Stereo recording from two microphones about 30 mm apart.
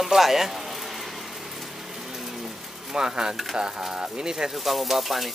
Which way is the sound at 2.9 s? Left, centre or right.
Right.